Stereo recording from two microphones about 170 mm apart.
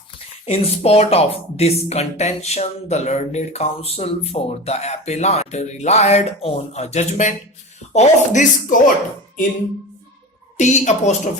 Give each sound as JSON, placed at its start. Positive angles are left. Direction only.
{"t": 0.4, "sound": "speech", "side_deg": 35}
{"t": 10.6, "sound": "speech", "side_deg": 45}